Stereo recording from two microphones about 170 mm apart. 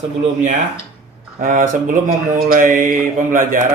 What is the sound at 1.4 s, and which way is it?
Speech, 50° right (ahead or behind).